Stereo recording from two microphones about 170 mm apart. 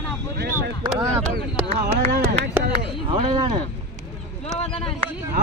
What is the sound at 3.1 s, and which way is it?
Speech, 30° right (ahead or behind).